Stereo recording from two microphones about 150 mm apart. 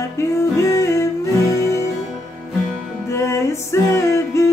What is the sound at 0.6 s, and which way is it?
Music, 20° left (ahead or behind).